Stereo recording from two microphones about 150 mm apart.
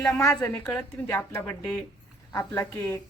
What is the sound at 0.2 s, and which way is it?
A woman's voice, 20° left (ahead or behind).